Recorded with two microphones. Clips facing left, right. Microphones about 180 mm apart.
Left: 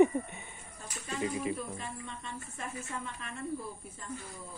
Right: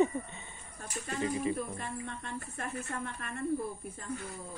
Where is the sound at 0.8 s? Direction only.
55° right (ahead or behind).